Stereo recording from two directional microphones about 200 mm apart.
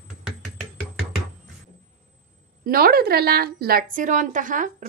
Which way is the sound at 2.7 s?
50° right (ahead or behind).